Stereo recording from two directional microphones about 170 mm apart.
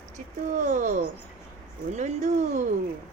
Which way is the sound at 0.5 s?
50° right (ahead or behind).